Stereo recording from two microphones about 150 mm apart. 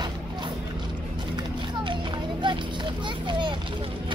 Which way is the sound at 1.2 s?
30° right (ahead or behind).